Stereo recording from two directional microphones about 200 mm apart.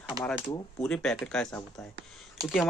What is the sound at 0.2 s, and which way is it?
Speech, 15° right (ahead or behind).